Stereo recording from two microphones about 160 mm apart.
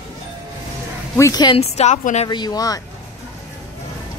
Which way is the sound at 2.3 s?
25° left (ahead or behind).